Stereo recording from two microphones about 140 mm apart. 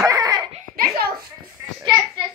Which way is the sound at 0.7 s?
90° right.